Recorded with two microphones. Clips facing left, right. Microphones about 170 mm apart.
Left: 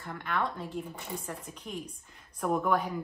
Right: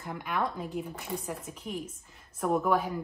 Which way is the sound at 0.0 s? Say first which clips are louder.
Right 1 dB; 10° right (ahead or behind).